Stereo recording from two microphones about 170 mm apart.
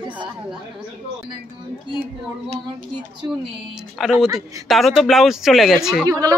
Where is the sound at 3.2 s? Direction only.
15° right (ahead or behind).